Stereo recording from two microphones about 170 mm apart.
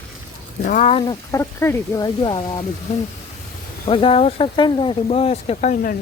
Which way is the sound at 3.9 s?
30° left (ahead or behind).